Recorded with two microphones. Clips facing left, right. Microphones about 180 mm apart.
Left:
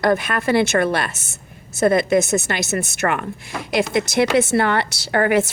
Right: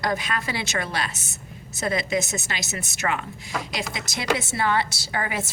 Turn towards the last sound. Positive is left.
turn(degrees=65)  # may be behind; listen again after turning